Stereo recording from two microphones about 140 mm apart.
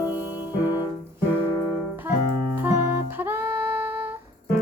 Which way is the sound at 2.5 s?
15° right (ahead or behind).